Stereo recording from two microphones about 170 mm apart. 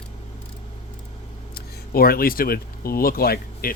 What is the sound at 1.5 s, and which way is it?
Speech, 60° left (ahead or behind).